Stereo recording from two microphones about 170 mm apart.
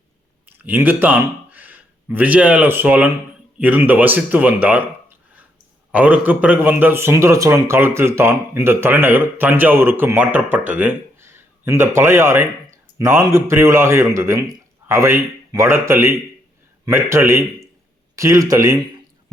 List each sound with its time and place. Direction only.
0.4 s speech: 10° right (ahead or behind)
5.9 s speech: 10° right (ahead or behind)